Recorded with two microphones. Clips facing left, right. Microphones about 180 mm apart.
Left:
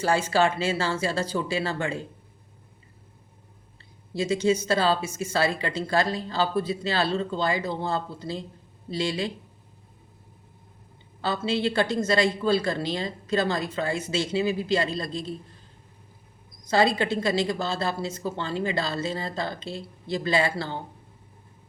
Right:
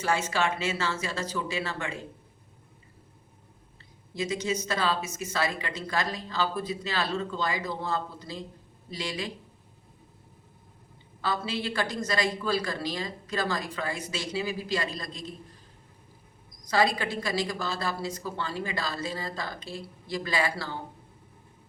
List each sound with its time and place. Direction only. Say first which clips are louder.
0.0 s speech: left 5 dB; 30° left (ahead or behind)
4.1 s speech: left 7 dB; 30° left (ahead or behind)
11.2 s speech: left 5 dB; 30° left (ahead or behind)
16.6 s speech: left 4 dB; 25° left (ahead or behind)